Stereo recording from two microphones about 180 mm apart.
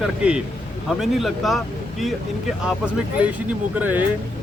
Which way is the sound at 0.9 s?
Centre (ahead or behind).